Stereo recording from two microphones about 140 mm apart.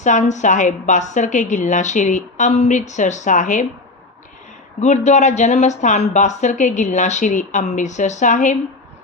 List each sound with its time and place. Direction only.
0.0 s speech: 60° left (ahead or behind)
4.8 s speech: 55° left (ahead or behind)